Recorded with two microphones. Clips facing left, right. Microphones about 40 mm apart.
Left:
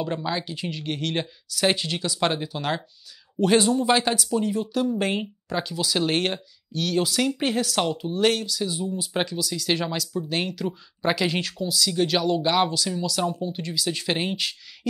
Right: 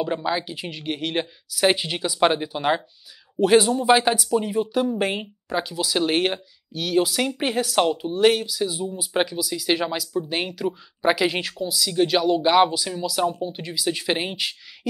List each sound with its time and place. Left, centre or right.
0.0 s speech: centre
3.3 s speech: centre